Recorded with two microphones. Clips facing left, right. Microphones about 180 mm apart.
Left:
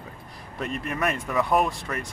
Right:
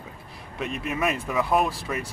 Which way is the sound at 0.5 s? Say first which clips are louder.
Right 1 dB; 5° right (ahead or behind).